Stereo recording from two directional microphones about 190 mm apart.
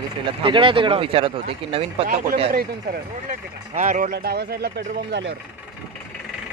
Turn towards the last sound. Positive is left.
turn(degrees=-65)  # may be behind; listen again after turning